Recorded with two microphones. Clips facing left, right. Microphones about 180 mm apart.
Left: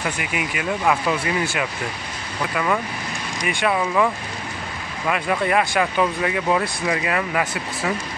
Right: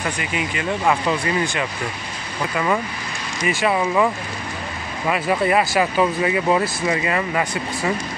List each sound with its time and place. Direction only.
0.2 s speech: 10° left (ahead or behind)
2.5 s speech: 5° right (ahead or behind)